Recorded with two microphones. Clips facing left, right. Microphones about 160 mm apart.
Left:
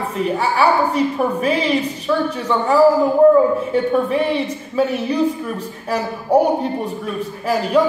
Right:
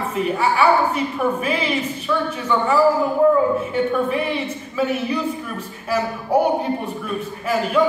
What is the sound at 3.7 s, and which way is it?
A man's voice, 35° left (ahead or behind).